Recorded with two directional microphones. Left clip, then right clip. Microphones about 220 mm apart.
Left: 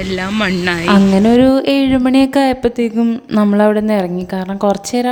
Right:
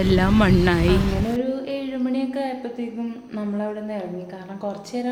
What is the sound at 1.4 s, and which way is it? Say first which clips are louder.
Speech: left 15 dB; 50° left (ahead or behind).